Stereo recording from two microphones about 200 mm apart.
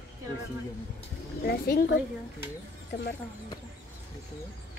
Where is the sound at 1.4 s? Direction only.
50° left (ahead or behind).